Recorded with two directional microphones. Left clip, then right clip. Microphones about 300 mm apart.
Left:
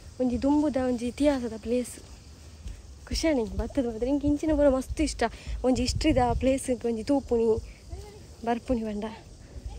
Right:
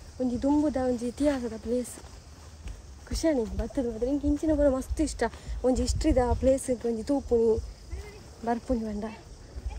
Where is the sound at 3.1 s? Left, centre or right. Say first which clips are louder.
Even; centre.